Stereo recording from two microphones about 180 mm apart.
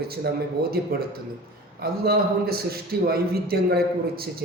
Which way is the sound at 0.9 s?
60° right (ahead or behind).